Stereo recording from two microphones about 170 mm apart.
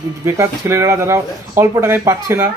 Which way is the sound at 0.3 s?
15° right (ahead or behind).